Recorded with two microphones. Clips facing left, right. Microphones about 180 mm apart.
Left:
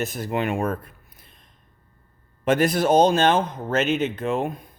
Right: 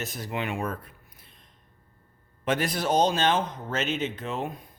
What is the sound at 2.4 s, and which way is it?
Speech, 50° left (ahead or behind).